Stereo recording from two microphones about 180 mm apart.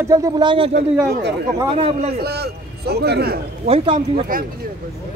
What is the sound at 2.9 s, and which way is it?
Speech, 65° right (ahead or behind).